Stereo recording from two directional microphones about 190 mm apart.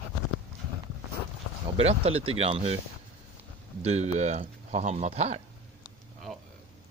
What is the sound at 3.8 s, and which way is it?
Speech, 35° right (ahead or behind).